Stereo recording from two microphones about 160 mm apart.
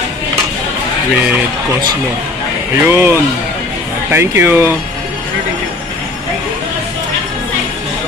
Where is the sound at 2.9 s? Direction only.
15° right (ahead or behind).